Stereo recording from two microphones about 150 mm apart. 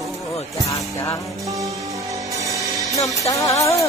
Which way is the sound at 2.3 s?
20° right (ahead or behind).